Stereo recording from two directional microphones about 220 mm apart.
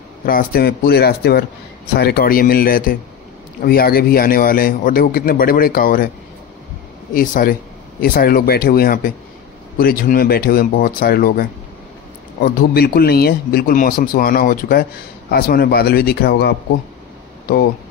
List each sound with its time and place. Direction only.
0.2 s a man's voice: 40° left (ahead or behind)
7.2 s a man's voice: 40° left (ahead or behind)